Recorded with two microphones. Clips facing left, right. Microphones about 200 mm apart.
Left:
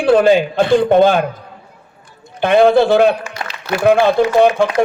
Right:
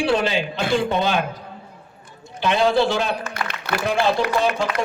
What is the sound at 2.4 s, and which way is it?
Speech, 55° left (ahead or behind).